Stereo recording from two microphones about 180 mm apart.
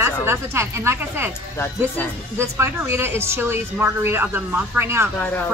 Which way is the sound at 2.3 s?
15° right (ahead or behind).